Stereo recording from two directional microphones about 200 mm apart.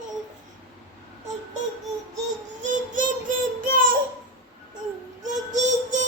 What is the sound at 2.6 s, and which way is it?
Child singing, 40° right (ahead or behind).